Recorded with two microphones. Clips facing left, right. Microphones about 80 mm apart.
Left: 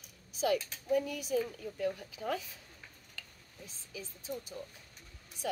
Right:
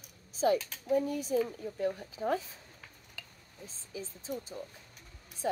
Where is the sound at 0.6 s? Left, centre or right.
Centre.